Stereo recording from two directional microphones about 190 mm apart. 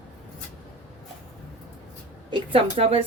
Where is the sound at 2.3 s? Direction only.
30° right (ahead or behind).